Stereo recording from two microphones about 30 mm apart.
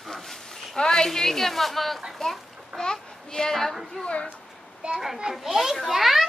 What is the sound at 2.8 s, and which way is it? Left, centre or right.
Speech, left.